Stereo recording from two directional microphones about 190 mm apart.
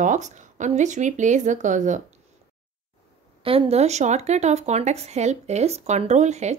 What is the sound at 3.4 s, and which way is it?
Speech, 30° right (ahead or behind).